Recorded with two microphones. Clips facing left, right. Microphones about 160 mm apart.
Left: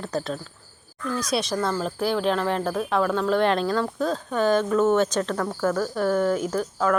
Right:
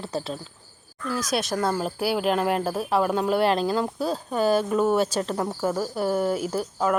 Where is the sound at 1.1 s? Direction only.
Centre (ahead or behind).